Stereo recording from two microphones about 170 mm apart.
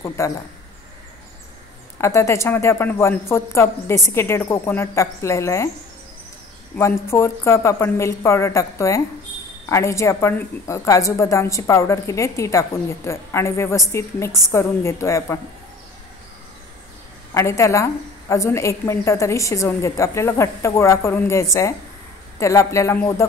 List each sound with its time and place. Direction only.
0.2 s a woman's voice: 15° left (ahead or behind)
2.0 s a woman's voice: 15° left (ahead or behind)
6.8 s a woman's voice: 15° left (ahead or behind)
17.3 s a woman's voice: 15° left (ahead or behind)